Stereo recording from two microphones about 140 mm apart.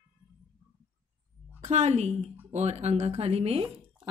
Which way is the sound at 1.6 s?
55° right (ahead or behind).